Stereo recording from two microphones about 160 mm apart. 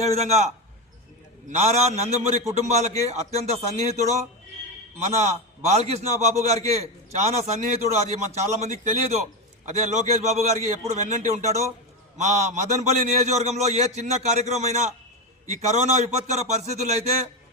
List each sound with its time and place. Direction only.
0.0 s a man's voice: 40° right (ahead or behind)
1.5 s a man's voice: 45° right (ahead or behind)